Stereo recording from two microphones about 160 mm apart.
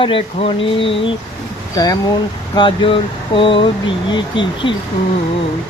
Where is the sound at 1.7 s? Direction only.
25° left (ahead or behind).